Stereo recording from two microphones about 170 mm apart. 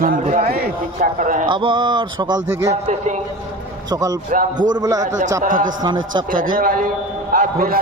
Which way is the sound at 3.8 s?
20° right (ahead or behind).